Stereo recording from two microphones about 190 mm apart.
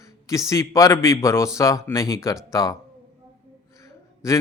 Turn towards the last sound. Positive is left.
turn(degrees=15)  # may be behind; listen again after turning